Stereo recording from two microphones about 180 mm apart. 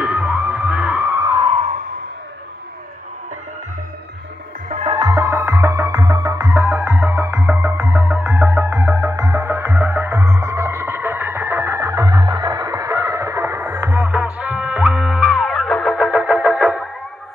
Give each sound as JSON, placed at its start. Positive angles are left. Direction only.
{"t": 0.0, "sound": "music", "side_deg": -5}
{"t": 4.6, "sound": "music", "side_deg": -40}
{"t": 4.9, "sound": "music", "side_deg": -20}